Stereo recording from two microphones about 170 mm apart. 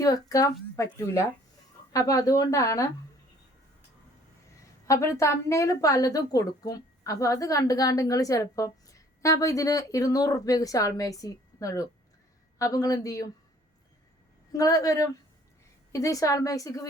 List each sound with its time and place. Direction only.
0.0 s a woman's voice: 20° left (ahead or behind)
4.9 s a woman's voice: 20° left (ahead or behind)
14.5 s a woman's voice: 20° left (ahead or behind)